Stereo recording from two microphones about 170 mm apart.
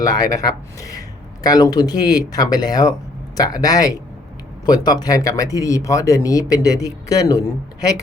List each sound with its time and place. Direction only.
0.0 s speech: 20° left (ahead or behind)